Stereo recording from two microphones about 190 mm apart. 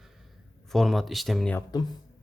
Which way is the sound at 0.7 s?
Centre (ahead or behind).